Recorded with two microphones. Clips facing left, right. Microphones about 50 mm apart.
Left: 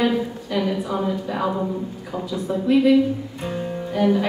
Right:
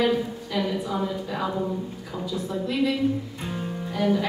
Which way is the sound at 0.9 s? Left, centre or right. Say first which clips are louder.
Left 4 dB; left.